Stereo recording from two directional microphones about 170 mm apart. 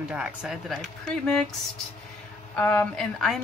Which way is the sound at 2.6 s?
10° left (ahead or behind).